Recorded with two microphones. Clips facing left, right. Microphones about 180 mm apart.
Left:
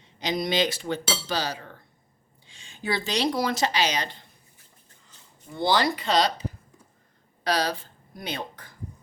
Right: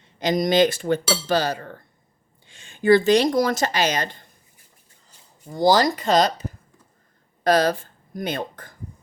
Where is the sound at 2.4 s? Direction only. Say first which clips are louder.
Right 12 dB; 55° right (ahead or behind).